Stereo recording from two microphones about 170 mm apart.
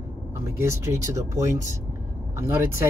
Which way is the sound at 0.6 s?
15° right (ahead or behind).